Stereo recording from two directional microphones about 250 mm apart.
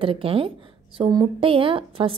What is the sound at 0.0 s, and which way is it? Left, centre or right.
Speech, right.